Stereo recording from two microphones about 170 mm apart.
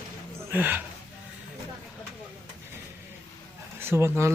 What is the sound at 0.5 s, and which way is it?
Speech, 10° right (ahead or behind).